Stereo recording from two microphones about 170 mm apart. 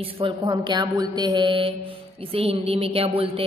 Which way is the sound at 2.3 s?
35° right (ahead or behind).